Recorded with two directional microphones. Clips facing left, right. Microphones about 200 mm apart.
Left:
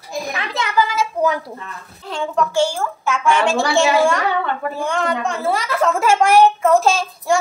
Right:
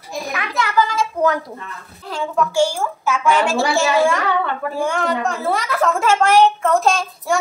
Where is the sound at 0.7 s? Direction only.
5° left (ahead or behind).